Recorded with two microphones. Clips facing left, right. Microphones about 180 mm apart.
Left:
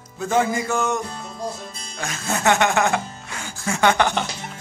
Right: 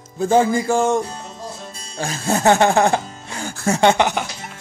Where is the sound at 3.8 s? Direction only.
25° right (ahead or behind).